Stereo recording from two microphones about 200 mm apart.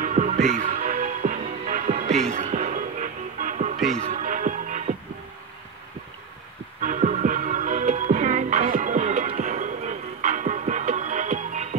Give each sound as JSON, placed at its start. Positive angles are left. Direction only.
{"t": 0.0, "sound": "music", "side_deg": -35}
{"t": 6.8, "sound": "music", "side_deg": -40}